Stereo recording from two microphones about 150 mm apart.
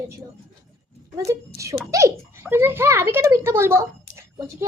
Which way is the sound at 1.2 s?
20° right (ahead or behind).